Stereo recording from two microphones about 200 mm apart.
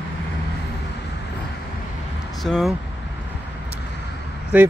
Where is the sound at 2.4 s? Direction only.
Centre (ahead or behind).